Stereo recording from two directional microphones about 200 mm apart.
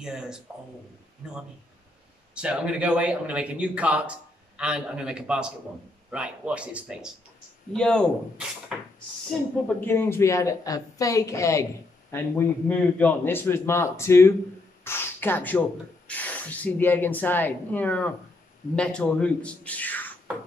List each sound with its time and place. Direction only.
0.0 s a man's voice: 5° right (ahead or behind)
2.3 s a man's voice: 5° right (ahead or behind)